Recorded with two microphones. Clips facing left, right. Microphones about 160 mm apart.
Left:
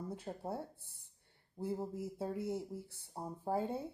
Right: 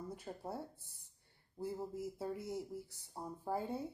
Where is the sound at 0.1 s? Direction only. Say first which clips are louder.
Left 3 dB; 25° left (ahead or behind).